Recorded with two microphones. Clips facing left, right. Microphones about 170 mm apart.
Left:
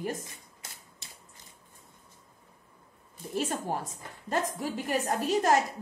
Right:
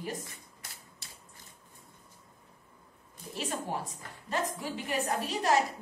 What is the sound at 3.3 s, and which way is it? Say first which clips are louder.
A woman's voice: left 4 dB; 45° left (ahead or behind).